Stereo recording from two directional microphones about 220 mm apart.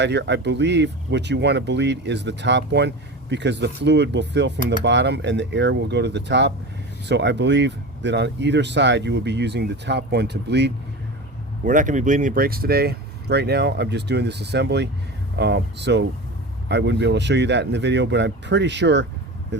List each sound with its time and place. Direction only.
0.0 s speech: 50° right (ahead or behind)
11.6 s speech: 35° right (ahead or behind); by 19.0 s 50° right (ahead or behind)